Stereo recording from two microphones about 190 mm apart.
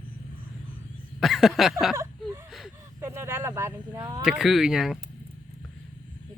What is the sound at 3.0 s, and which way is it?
Speech, 10° right (ahead or behind).